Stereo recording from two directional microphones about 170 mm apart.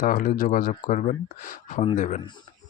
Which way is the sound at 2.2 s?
25° left (ahead or behind).